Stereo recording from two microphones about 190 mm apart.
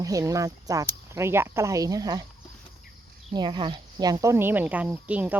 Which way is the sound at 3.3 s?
25° right (ahead or behind).